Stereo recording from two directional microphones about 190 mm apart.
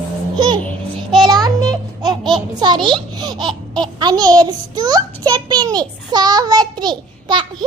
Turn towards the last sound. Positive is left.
turn(degrees=-25)  # may be behind; listen again after turning